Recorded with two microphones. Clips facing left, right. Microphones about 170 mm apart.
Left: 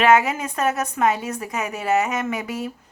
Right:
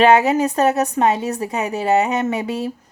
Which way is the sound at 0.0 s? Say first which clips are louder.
Right 4 dB; 30° right (ahead or behind).